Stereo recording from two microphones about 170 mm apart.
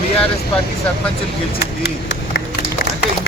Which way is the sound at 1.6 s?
85° left.